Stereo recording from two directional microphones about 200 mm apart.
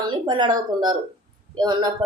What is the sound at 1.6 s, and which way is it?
Speech, 20° right (ahead or behind).